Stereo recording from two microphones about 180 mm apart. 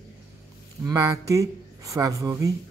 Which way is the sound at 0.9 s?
15° right (ahead or behind).